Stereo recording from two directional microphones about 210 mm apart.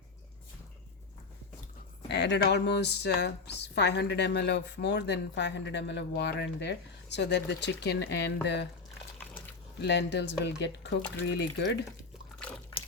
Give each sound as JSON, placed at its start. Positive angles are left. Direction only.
{"t": 2.0, "sound": "speech", "side_deg": 55}
{"t": 9.8, "sound": "speech", "side_deg": 55}